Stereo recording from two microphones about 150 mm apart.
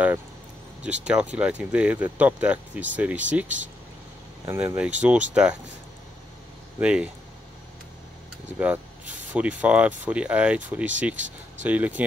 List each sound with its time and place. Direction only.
0.8 s speech: 10° right (ahead or behind)
6.8 s speech: 5° right (ahead or behind)
8.5 s speech: 10° right (ahead or behind)